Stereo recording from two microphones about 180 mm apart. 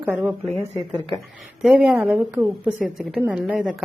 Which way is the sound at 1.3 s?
Centre (ahead or behind).